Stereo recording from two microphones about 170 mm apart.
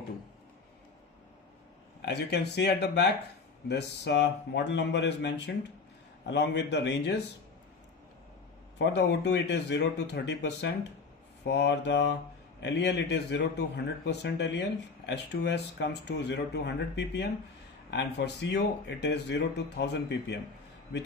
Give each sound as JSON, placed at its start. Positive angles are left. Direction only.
{"t": 2.0, "sound": "a man's voice", "side_deg": 85}
{"t": 8.7, "sound": "speech", "side_deg": 90}